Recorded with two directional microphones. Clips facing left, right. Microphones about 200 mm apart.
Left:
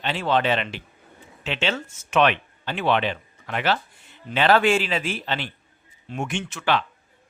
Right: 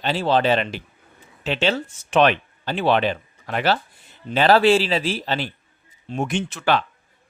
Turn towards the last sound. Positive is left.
turn(degrees=-40)  # may be behind; listen again after turning